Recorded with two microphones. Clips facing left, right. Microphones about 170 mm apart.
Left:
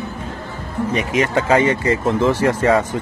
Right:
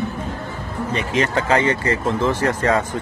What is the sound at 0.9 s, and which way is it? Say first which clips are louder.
Speech: left 2 dB; 15° left (ahead or behind).